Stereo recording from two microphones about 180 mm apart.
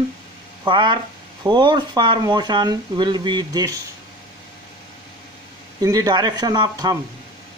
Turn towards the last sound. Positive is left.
turn(degrees=-20)  # may be behind; listen again after turning